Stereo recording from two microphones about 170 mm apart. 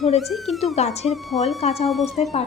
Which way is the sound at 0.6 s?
40° left (ahead or behind).